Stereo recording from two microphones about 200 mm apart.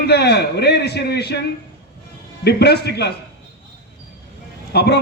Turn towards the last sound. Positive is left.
turn(degrees=55)  # may be behind; listen again after turning